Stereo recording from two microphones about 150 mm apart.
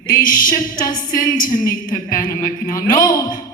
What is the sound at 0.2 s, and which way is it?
A woman's voice, 65° left (ahead or behind).